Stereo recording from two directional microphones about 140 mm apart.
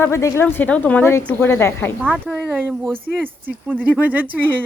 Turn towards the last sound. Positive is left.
turn(degrees=-10)  # may be behind; listen again after turning